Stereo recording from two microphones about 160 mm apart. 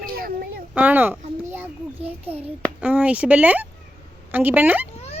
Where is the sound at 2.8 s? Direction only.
10° right (ahead or behind).